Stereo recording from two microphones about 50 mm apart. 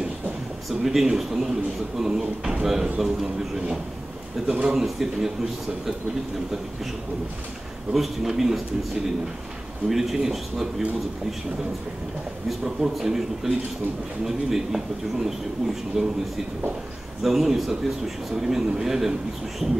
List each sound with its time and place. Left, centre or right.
0.7 s a man's voice: centre
4.5 s a man's voice: centre
7.9 s a man's voice: centre
9.8 s speech: centre
12.4 s a man's voice: centre
17.2 s a man's voice: centre